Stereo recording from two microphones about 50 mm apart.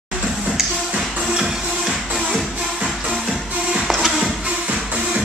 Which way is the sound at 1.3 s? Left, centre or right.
Centre.